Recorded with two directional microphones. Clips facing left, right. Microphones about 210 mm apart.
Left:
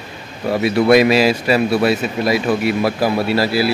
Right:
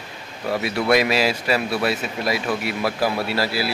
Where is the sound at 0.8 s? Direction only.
20° left (ahead or behind).